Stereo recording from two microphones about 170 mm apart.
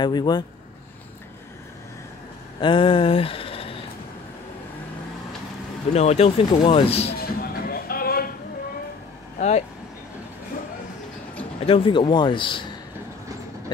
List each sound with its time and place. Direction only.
0.0 s a man's voice: 25° left (ahead or behind)
2.6 s a sound: 30° left (ahead or behind)
5.9 s speech: 40° left (ahead or behind)
7.2 s music: 60° left (ahead or behind)
11.6 s a man's voice: 30° left (ahead or behind)